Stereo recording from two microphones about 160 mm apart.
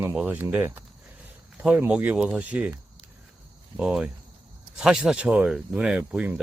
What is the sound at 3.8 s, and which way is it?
Speech, 5° right (ahead or behind).